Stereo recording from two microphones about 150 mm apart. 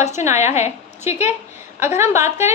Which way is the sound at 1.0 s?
50° left (ahead or behind).